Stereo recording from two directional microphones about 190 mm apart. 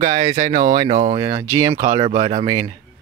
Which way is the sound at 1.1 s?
20° right (ahead or behind).